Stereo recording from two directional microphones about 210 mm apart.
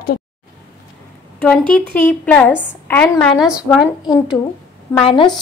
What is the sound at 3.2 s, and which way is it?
Speech, centre (ahead or behind).